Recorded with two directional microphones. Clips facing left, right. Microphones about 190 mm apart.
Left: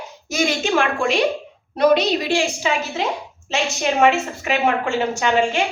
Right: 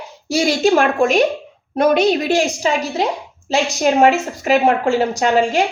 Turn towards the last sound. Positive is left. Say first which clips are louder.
# right 3 dB
turn(degrees=-40)  # may be behind; listen again after turning